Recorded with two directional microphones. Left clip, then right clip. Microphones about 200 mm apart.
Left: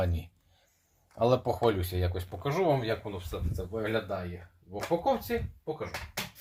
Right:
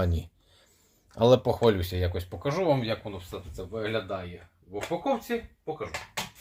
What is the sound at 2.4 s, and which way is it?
Speech, 25° right (ahead or behind).